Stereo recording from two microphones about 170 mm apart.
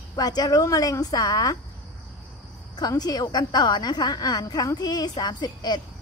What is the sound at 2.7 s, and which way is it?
A woman's voice, 25° left (ahead or behind).